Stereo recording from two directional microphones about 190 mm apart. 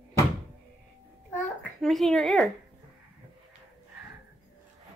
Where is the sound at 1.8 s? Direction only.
Centre (ahead or behind).